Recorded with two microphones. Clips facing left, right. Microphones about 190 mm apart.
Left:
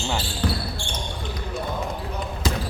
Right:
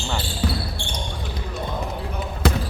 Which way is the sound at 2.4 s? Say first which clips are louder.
Right 5 dB; 60° right (ahead or behind).